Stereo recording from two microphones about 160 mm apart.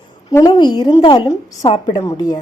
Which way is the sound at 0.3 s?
25° left (ahead or behind).